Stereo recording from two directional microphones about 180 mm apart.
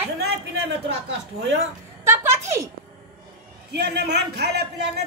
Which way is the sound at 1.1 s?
75° right (ahead or behind).